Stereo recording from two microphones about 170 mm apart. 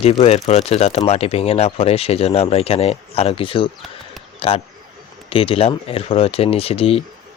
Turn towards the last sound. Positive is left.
turn(degrees=35)  # may be behind; listen again after turning